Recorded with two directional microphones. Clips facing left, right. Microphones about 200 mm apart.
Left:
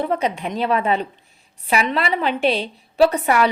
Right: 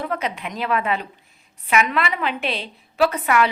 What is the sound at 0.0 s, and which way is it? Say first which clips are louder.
A woman's voice: left 5 dB; 30° left (ahead or behind).